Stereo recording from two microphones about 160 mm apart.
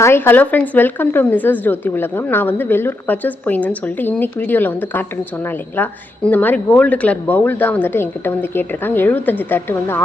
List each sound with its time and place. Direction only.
0.0 s speech: 15° left (ahead or behind)